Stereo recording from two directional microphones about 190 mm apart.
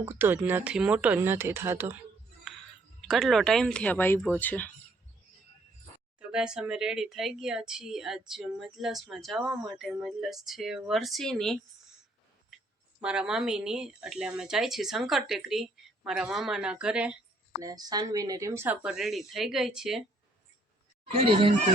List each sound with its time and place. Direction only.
0.0 s speech: 10° right (ahead or behind)
3.1 s a woman's voice: centre (ahead or behind)
6.1 s a woman's voice: 5° right (ahead or behind)
13.0 s a woman's voice: 5° right (ahead or behind)
17.6 s speech: 20° right (ahead or behind); by 20.1 s centre (ahead or behind)
21.0 s speech: 30° right (ahead or behind)